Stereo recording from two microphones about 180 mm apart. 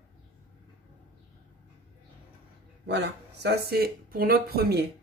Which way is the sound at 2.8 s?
70° right (ahead or behind).